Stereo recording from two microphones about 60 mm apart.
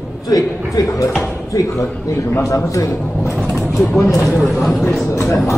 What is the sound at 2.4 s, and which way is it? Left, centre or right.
Speech, left.